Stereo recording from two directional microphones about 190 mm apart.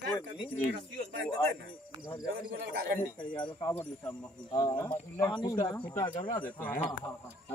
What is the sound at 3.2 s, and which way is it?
Speech, 25° left (ahead or behind).